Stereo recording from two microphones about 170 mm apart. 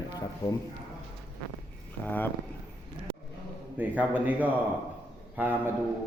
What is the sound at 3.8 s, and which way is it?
A man's voice, 10° right (ahead or behind).